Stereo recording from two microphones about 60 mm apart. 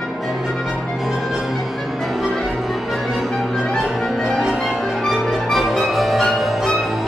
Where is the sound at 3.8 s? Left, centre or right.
Centre.